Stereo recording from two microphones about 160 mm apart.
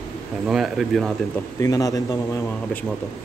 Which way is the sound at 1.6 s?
20° left (ahead or behind).